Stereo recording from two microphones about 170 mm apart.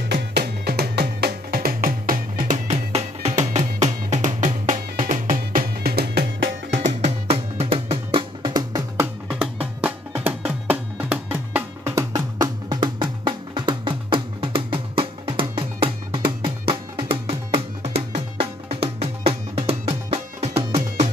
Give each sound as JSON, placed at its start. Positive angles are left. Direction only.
{"t": 0.1, "sound": "music", "side_deg": -70}
{"t": 7.0, "sound": "music", "side_deg": -35}